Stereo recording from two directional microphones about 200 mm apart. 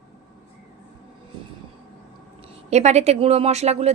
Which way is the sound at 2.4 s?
35° right (ahead or behind).